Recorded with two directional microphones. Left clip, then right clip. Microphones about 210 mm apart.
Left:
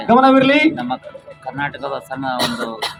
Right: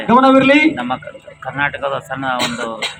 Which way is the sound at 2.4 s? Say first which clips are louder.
Right 1 dB; 35° left (ahead or behind).